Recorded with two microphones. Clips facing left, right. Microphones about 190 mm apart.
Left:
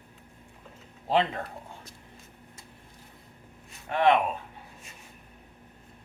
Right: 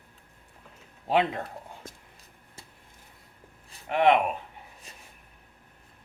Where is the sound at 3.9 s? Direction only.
20° right (ahead or behind).